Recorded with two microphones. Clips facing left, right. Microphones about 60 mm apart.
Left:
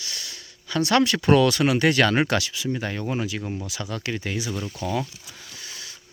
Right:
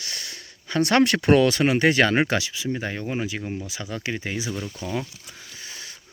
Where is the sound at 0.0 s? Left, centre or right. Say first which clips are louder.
Right 1 dB; right.